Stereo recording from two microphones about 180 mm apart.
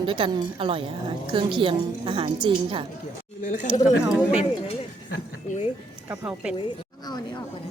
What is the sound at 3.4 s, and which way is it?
Speech, 45° left (ahead or behind).